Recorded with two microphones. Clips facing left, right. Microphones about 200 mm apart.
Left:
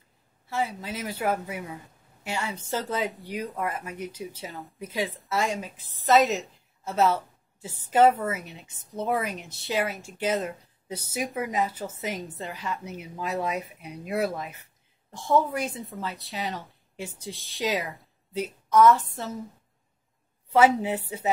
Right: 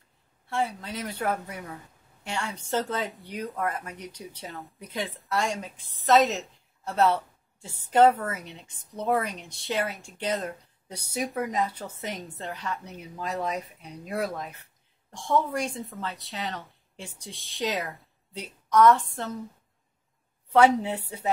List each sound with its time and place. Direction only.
0.5 s a woman's voice: 5° left (ahead or behind)
20.5 s speech: 5° left (ahead or behind)